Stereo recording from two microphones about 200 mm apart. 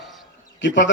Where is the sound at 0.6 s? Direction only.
65° left (ahead or behind).